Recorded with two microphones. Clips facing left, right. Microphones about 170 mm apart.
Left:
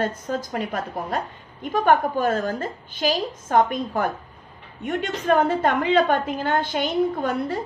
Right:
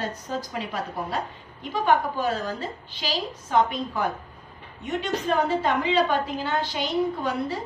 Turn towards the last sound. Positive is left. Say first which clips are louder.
# left 3 dB
turn(degrees=50)  # may be behind; listen again after turning